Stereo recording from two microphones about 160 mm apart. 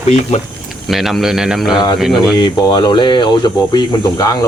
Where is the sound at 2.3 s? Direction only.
30° left (ahead or behind).